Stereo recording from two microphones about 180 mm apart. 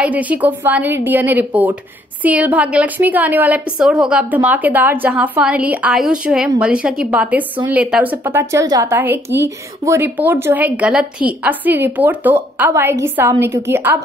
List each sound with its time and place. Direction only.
0.0 s a woman's voice: 10° right (ahead or behind)